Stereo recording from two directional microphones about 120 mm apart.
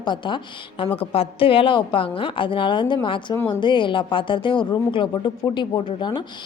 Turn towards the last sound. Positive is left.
turn(degrees=40)  # may be behind; listen again after turning